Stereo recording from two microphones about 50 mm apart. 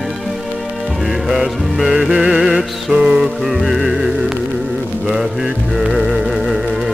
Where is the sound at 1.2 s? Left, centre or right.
Centre.